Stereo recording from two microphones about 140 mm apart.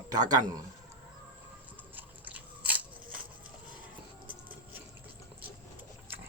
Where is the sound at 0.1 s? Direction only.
30° right (ahead or behind).